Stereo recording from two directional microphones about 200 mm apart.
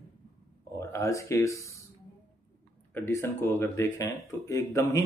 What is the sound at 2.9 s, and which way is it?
Speech, 15° left (ahead or behind).